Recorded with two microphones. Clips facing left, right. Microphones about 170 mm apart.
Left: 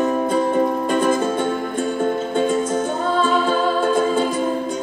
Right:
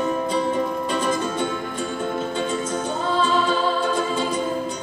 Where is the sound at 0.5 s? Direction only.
50° left (ahead or behind).